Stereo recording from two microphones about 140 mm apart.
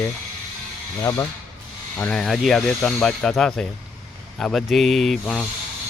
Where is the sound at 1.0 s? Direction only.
25° left (ahead or behind).